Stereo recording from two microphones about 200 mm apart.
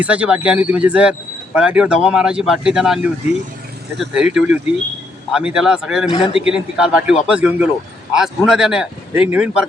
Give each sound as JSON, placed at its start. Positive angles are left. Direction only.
{"t": 0.0, "sound": "speech", "side_deg": -5}
{"t": 6.1, "sound": "a man's voice", "side_deg": 25}
{"t": 6.3, "sound": "speech", "side_deg": -5}